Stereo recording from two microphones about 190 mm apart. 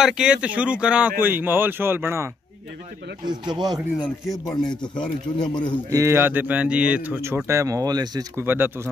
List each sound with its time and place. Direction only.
0.0 s speech: 5° right (ahead or behind)
3.3 s speech: 25° right (ahead or behind)
4.5 s speech: 20° left (ahead or behind)
5.9 s speech: 15° right (ahead or behind)